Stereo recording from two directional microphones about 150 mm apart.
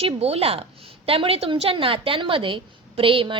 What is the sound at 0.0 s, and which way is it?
A woman's voice, 40° right (ahead or behind).